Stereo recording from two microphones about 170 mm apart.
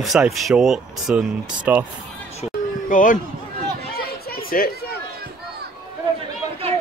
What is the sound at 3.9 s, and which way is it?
Chatter, 65° left (ahead or behind).